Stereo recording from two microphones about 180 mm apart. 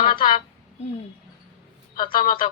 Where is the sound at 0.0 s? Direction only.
30° left (ahead or behind).